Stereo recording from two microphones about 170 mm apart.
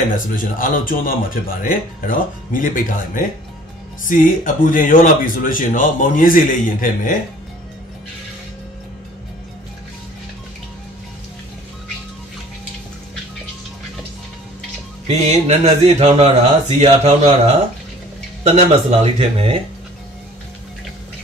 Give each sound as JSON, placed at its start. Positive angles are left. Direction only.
{"t": 0.1, "sound": "speech", "side_deg": 55}
{"t": 15.0, "sound": "speech", "side_deg": -40}